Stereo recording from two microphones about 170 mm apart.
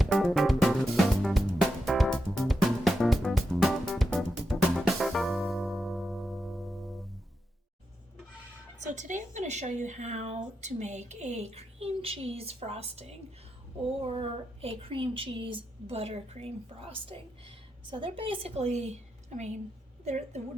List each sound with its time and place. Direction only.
0.0 s music: centre (ahead or behind)
8.9 s a woman's voice: 50° right (ahead or behind)